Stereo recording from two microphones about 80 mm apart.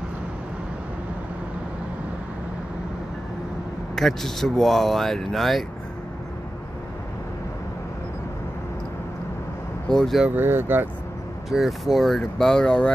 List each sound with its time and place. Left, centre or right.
3.9 s speech: centre
9.8 s speech: centre
10.3 s speech: right
11.5 s speech: centre